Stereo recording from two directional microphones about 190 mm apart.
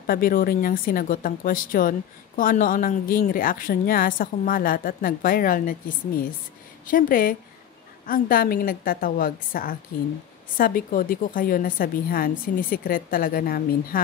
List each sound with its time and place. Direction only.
0.0 s speech: 50° left (ahead or behind)